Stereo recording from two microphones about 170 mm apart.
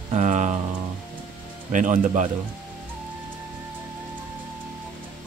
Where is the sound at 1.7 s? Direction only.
50° right (ahead or behind).